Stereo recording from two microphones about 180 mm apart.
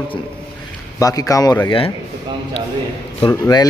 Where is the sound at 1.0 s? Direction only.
20° left (ahead or behind).